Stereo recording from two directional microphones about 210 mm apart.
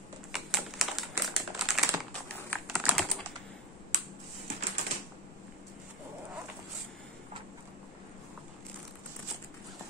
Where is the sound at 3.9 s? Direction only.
35° right (ahead or behind).